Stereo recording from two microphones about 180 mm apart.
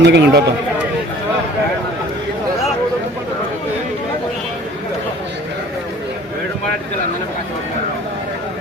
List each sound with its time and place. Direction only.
0.0 s speech: 70° right (ahead or behind)